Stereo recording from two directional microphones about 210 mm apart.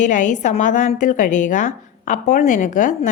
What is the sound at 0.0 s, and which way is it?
A woman's voice, 35° left (ahead or behind).